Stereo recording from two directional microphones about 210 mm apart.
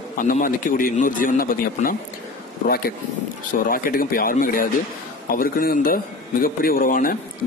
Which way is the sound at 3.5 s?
45° left (ahead or behind).